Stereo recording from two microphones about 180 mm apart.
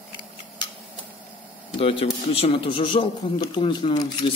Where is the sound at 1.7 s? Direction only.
30° left (ahead or behind).